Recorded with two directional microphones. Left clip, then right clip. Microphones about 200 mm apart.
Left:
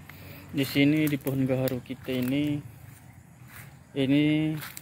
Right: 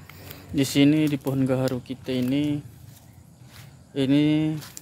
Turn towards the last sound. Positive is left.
turn(degrees=-15)  # may be behind; listen again after turning